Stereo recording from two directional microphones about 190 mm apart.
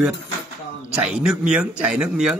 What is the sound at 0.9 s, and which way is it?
Speech, 5° right (ahead or behind).